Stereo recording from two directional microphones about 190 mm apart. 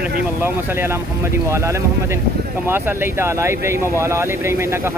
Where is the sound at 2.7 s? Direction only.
15° right (ahead or behind).